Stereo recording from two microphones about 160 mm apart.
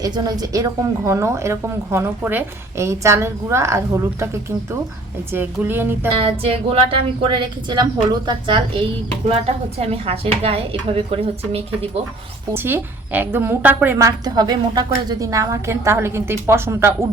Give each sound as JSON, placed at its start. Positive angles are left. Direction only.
{"t": 0.0, "sound": "a woman's voice", "side_deg": -25}
{"t": 5.3, "sound": "a woman's voice", "side_deg": -10}
{"t": 6.1, "sound": "a woman's voice", "side_deg": -35}
{"t": 9.8, "sound": "a woman's voice", "side_deg": -40}
{"t": 12.5, "sound": "a woman's voice", "side_deg": -15}